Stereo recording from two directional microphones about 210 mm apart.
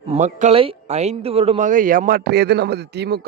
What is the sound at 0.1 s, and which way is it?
Speech, 35° right (ahead or behind).